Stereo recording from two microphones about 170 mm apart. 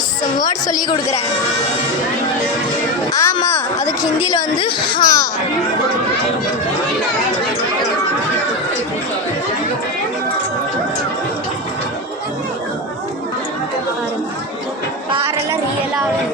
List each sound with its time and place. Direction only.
0.7 s speech: 20° left (ahead or behind)
3.1 s a sound: 20° left (ahead or behind)
3.3 s speech: 20° left (ahead or behind)